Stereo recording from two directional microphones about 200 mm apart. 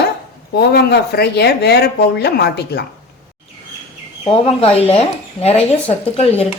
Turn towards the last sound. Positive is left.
turn(degrees=30)  # may be behind; listen again after turning